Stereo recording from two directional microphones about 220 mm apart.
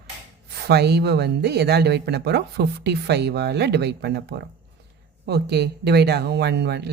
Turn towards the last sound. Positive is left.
turn(degrees=-50)  # may be behind; listen again after turning